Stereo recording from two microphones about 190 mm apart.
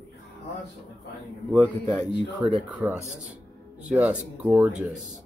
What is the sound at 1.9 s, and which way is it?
Speech, 5° left (ahead or behind).